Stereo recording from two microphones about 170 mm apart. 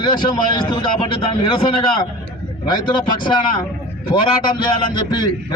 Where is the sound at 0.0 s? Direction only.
30° left (ahead or behind).